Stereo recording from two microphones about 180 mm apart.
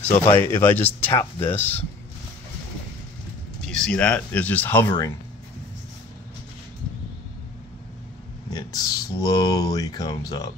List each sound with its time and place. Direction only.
0.1 s speech: 10° left (ahead or behind)
3.6 s speech: 5° left (ahead or behind)
8.5 s speech: 20° left (ahead or behind)